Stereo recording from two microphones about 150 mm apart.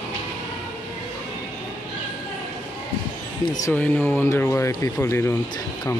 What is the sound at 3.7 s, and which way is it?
Speech, 10° left (ahead or behind).